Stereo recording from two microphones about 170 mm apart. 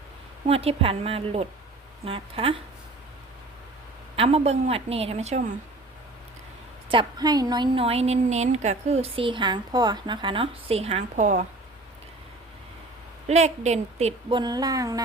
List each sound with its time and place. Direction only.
0.4 s a woman's voice: 35° right (ahead or behind)
4.1 s a woman's voice: 35° right (ahead or behind)
6.9 s a woman's voice: 25° right (ahead or behind); by 11.4 s 45° right (ahead or behind)
13.2 s a woman's voice: 40° right (ahead or behind); by 15.0 s 20° right (ahead or behind)